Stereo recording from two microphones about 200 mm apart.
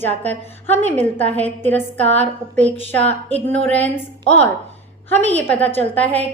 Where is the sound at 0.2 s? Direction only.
10° left (ahead or behind).